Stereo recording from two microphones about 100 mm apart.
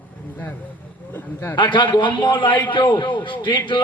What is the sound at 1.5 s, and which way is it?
A man's voice, 50° left (ahead or behind).